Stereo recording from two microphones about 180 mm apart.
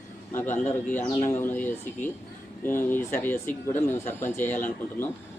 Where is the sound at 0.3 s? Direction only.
10° left (ahead or behind).